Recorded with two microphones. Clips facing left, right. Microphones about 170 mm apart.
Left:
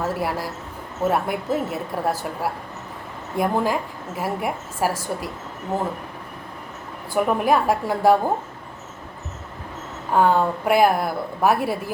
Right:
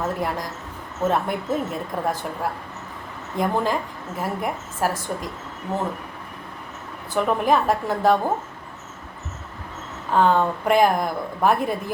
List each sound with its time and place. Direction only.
0.0 s a woman's voice: 10° left (ahead or behind)
7.1 s a woman's voice: 10° left (ahead or behind)
10.1 s a woman's voice: 10° left (ahead or behind)